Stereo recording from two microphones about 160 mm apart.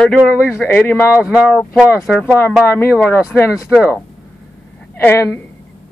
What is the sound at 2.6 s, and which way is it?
Speech, 15° left (ahead or behind).